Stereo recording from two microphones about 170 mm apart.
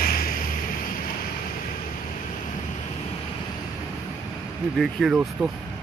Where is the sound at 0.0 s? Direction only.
60° left (ahead or behind).